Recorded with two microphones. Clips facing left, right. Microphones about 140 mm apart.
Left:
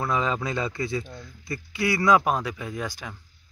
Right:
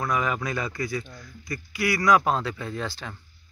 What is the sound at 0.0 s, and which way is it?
Speech, 25° left (ahead or behind).